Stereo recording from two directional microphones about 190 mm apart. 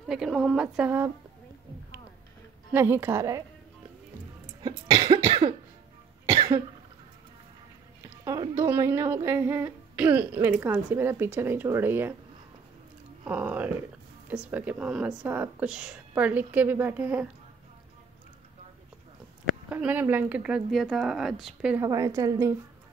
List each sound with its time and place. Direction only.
0.0 s speech: centre (ahead or behind)
2.7 s speech: 10° right (ahead or behind)
4.6 s cough: 25° right (ahead or behind)
8.2 s speech: 20° right (ahead or behind)
13.2 s speech: 10° right (ahead or behind)
19.7 s speech: 10° right (ahead or behind)
21.8 s speech: 15° right (ahead or behind)